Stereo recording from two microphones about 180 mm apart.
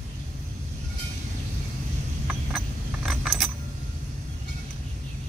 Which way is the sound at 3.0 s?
Centre (ahead or behind).